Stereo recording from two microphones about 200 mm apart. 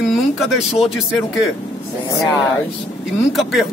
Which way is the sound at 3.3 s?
Centre (ahead or behind).